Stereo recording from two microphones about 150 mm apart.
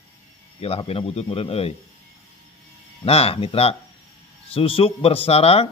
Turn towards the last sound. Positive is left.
turn(degrees=40)  # may be behind; listen again after turning